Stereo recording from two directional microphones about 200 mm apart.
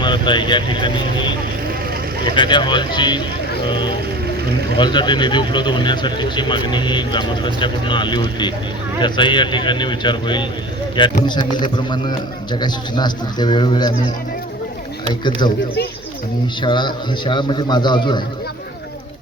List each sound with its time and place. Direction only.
0.0 s speech: 25° left (ahead or behind)
2.3 s speech: 25° left (ahead or behind)
15.2 s speech: 20° left (ahead or behind)
16.6 s speech: 25° left (ahead or behind)